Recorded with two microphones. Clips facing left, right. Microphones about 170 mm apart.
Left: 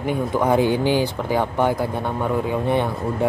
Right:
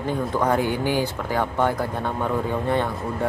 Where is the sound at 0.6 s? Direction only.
20° left (ahead or behind).